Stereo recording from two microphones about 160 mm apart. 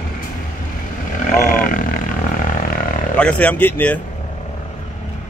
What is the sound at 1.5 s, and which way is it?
Grunt, 60° left (ahead or behind).